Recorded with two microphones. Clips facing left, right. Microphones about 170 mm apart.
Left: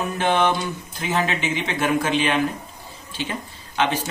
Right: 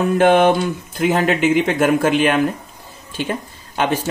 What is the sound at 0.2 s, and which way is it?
Speech, 55° right (ahead or behind).